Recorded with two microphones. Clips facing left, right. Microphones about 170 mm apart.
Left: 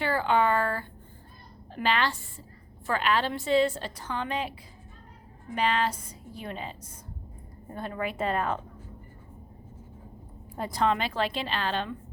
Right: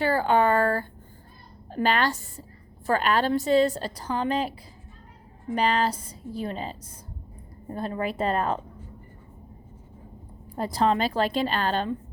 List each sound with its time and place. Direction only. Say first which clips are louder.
0.0 s a woman's voice: right 3 dB; 40° right (ahead or behind)
5.5 s a woman's voice: right 3 dB; 40° right (ahead or behind)
10.6 s a woman's voice: right 3 dB; 35° right (ahead or behind)